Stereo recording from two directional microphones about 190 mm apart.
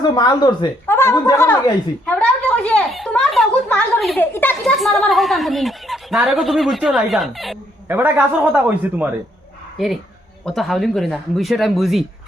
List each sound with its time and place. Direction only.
0.0 s speech: 20° left (ahead or behind); by 7.6 s centre (ahead or behind)
7.9 s speech: 10° right (ahead or behind)